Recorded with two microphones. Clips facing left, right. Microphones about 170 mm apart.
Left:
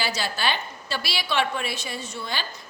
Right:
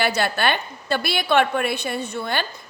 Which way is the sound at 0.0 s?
60° right (ahead or behind).